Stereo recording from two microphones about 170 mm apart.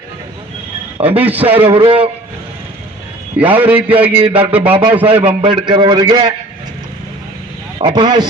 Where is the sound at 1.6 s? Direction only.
30° right (ahead or behind).